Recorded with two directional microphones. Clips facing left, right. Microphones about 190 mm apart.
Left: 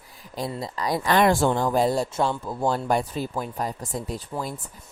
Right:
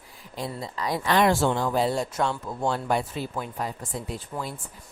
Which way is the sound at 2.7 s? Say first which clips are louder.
Left 2 dB; 40° left (ahead or behind).